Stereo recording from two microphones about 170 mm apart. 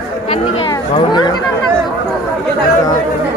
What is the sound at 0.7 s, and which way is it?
Speech, 25° left (ahead or behind).